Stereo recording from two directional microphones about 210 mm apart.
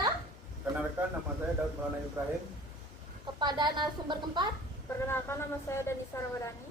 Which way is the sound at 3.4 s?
20° right (ahead or behind).